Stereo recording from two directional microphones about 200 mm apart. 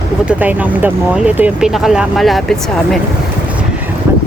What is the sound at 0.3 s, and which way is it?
Speech, 10° right (ahead or behind).